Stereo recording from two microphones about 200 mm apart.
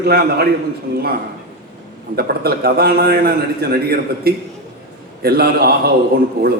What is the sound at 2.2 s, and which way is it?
A man's voice, 50° right (ahead or behind).